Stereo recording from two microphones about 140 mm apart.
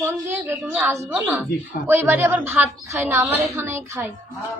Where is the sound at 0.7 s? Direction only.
15° right (ahead or behind).